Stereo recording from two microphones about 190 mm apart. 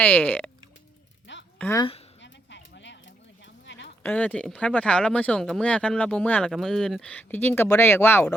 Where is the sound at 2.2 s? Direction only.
65° left (ahead or behind).